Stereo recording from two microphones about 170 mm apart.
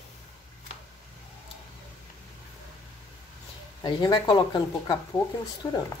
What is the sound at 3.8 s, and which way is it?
Speech, 25° left (ahead or behind).